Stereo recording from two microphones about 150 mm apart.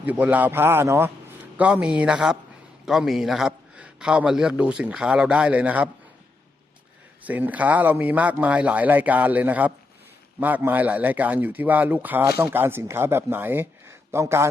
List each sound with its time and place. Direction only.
0.0 s a man's voice: 10° right (ahead or behind)
7.3 s a man's voice: 10° right (ahead or behind)